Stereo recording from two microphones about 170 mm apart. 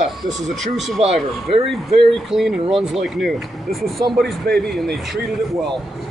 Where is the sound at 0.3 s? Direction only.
Centre (ahead or behind).